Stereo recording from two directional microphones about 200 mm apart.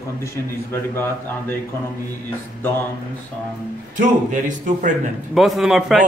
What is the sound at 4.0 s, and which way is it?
A man's voice, 40° right (ahead or behind).